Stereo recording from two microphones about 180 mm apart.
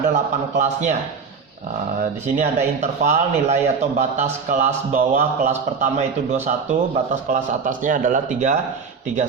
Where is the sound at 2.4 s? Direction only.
40° right (ahead or behind).